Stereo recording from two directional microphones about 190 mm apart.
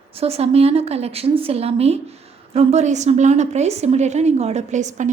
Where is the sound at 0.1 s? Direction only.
30° right (ahead or behind).